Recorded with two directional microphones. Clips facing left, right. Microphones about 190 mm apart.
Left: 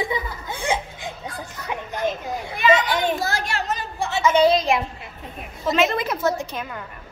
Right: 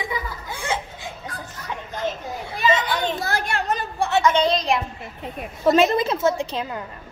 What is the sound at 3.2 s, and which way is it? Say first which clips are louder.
A woman's voice: right 1 dB; 55° right (ahead or behind).